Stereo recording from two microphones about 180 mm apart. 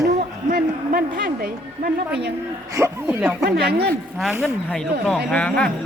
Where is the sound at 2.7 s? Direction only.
15° right (ahead or behind).